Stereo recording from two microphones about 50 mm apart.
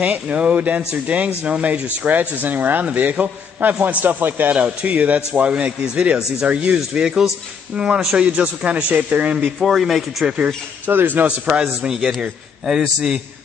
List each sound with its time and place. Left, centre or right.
0.0 s a man's voice: right
9.6 s speech: centre
10.2 s a man's voice: right
10.9 s speech: right
11.2 s a man's voice: right
11.6 s a man's voice: centre